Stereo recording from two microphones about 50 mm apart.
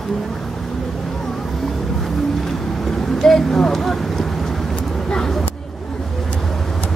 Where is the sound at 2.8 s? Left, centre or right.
Centre.